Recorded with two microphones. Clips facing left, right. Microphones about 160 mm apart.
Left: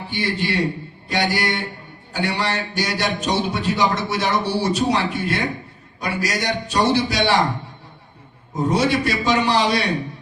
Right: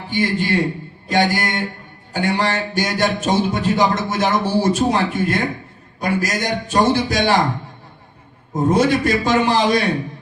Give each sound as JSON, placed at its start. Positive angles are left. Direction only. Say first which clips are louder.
{"t": 0.1, "sound": "a man's voice", "louder": "right 5 dB", "side_deg": -45}
{"t": 8.5, "sound": "a man's voice", "louder": "right 3 dB", "side_deg": -50}